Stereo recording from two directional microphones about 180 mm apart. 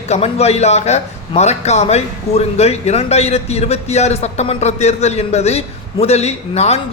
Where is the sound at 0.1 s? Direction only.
35° left (ahead or behind).